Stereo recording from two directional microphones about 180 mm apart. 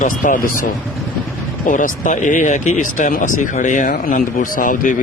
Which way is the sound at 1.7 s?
45° left (ahead or behind).